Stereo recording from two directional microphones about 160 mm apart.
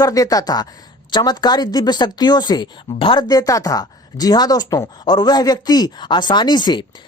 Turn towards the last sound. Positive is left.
turn(degrees=30)  # may be behind; listen again after turning